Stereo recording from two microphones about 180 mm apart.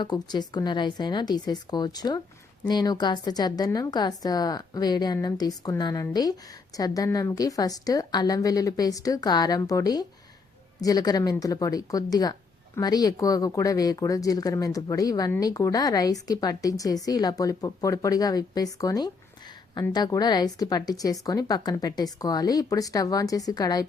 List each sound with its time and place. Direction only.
0.0 s speech: 25° left (ahead or behind)